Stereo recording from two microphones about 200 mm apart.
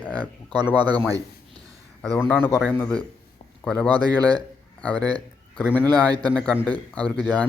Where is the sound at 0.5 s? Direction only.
20° right (ahead or behind).